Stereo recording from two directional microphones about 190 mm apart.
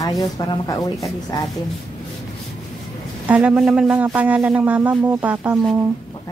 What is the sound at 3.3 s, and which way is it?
Speech, 5° right (ahead or behind).